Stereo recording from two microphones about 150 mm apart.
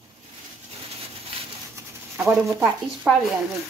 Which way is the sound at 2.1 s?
15° right (ahead or behind).